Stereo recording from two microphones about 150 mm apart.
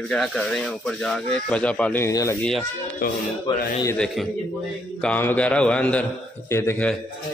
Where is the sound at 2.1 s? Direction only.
20° left (ahead or behind).